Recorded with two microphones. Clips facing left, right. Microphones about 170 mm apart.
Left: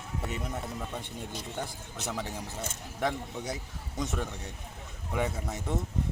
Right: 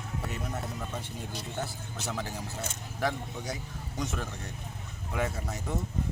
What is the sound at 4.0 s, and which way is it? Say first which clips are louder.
Speech: left 2 dB; 20° left (ahead or behind).